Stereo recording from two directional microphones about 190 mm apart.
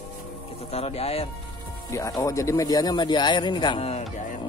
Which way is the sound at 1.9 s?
15° left (ahead or behind).